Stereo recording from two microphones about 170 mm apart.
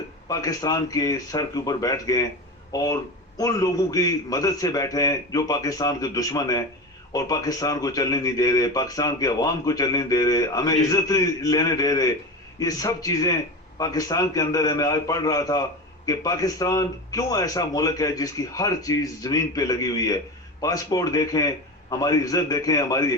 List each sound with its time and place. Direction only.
0.3 s speech: 20° left (ahead or behind)